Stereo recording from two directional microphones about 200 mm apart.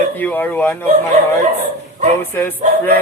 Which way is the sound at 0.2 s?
10° left (ahead or behind).